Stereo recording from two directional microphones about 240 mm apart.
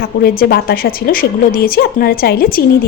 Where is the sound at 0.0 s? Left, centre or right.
Left.